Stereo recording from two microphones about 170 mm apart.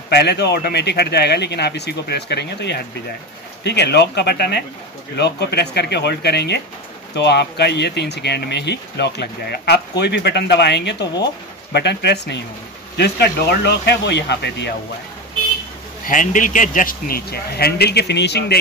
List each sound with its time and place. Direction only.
0.1 s speech: 75° left (ahead or behind)
16.1 s speech: 50° left (ahead or behind); by 18.6 s 85° left